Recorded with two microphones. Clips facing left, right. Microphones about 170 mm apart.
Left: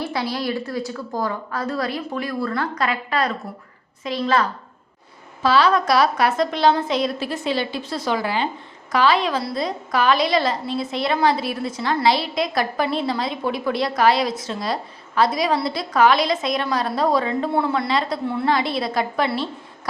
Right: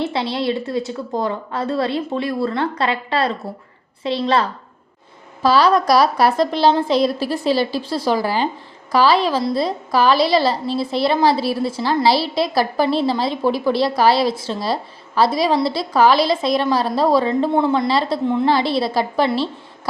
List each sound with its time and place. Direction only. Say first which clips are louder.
0.0 s a woman's voice: right 4 dB; 25° right (ahead or behind)